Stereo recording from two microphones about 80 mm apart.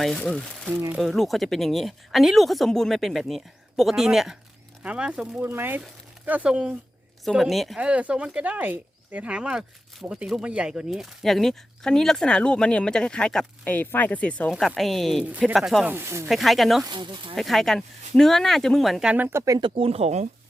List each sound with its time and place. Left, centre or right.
0.0 s speech: centre
5.4 s speech: right
7.3 s speech: centre
7.8 s speech: centre
14.8 s speech: centre
15.2 s speech: centre
15.5 s speech: centre
15.9 s speech: right
16.3 s speech: centre
16.8 s speech: right
17.3 s speech: centre
19.1 s speech: right